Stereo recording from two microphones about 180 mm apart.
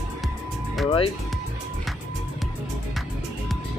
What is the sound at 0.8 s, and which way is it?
Music, 30° left (ahead or behind).